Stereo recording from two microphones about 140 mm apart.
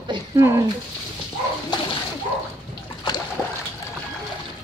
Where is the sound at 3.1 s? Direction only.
30° left (ahead or behind).